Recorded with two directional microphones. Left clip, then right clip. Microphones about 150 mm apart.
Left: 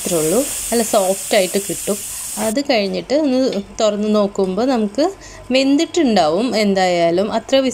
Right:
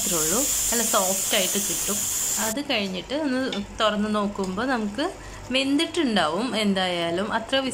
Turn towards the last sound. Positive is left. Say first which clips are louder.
# left 9 dB
turn(degrees=30)  # may be behind; listen again after turning